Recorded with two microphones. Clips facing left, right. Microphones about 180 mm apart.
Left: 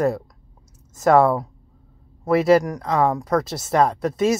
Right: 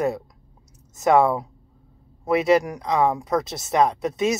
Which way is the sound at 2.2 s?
20° right (ahead or behind).